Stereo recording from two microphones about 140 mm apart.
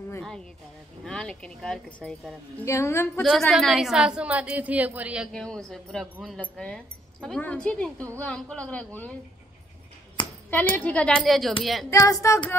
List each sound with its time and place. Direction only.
1.0 s speech: 5° left (ahead or behind)
2.6 s speech: 20° left (ahead or behind)
3.2 s a woman's voice: centre (ahead or behind)
5.3 s speech: 5° left (ahead or behind)
10.5 s speech: 10° left (ahead or behind)
11.9 s speech: 20° left (ahead or behind)